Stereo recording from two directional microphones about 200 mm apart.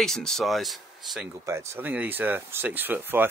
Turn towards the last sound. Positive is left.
turn(degrees=-10)  # may be behind; listen again after turning